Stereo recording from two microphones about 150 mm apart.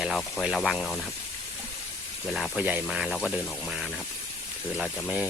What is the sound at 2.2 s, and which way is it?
Speech, centre (ahead or behind).